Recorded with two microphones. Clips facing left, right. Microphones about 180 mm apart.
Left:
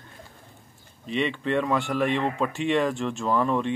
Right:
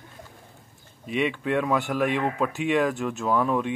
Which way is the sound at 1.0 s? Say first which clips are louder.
Right 1 dB; 10° right (ahead or behind).